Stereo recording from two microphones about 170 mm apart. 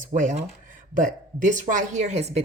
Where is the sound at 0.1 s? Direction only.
50° right (ahead or behind).